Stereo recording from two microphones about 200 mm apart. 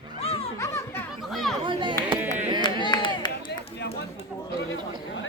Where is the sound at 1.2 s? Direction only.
Centre (ahead or behind).